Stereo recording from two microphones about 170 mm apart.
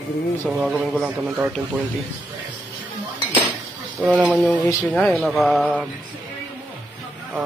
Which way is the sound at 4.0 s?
Centre (ahead or behind).